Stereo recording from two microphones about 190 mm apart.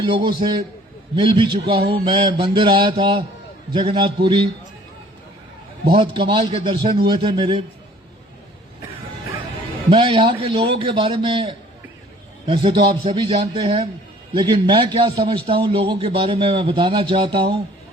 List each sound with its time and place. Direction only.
0.0 s a man's voice: 25° right (ahead or behind)
5.9 s a man's voice: 25° right (ahead or behind)
9.9 s a man's voice: 25° right (ahead or behind)
12.9 s a man's voice: 25° right (ahead or behind)